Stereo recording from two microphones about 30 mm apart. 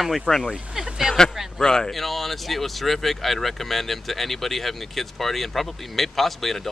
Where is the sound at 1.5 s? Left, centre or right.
Centre.